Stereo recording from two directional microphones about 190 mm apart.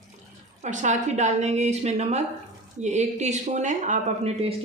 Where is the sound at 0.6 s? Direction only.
40° right (ahead or behind).